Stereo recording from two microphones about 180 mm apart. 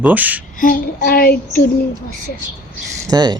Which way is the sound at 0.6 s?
50° left (ahead or behind).